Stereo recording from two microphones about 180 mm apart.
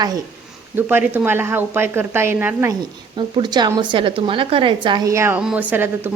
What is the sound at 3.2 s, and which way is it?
A woman's voice, 25° right (ahead or behind).